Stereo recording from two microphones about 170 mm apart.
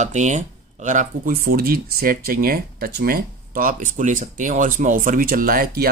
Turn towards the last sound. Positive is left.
turn(degrees=-60)  # may be behind; listen again after turning